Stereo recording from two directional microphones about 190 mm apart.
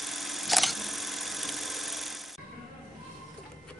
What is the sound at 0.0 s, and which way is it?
Camera, centre (ahead or behind).